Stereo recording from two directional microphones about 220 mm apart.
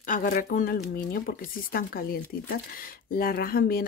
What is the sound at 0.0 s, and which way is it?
A woman's voice, 35° left (ahead or behind).